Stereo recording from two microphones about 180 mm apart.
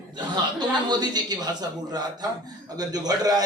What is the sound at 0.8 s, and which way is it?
Speech, 25° right (ahead or behind).